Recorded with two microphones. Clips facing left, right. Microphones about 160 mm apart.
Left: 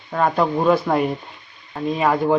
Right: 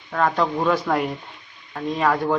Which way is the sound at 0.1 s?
15° left (ahead or behind).